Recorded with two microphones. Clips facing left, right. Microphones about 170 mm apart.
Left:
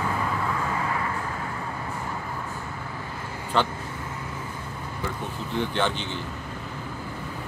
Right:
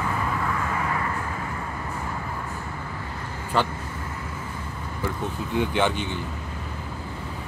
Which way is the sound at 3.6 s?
5° right (ahead or behind).